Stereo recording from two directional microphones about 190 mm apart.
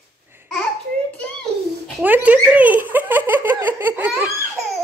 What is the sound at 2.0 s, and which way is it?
Speech, 10° right (ahead or behind).